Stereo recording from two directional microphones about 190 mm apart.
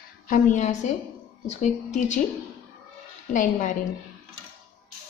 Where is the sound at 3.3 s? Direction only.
40° left (ahead or behind).